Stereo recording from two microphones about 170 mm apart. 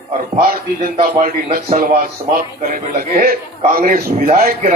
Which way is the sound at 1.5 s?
55° right (ahead or behind).